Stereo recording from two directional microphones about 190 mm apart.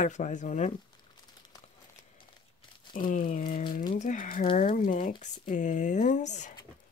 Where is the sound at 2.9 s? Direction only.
45° left (ahead or behind).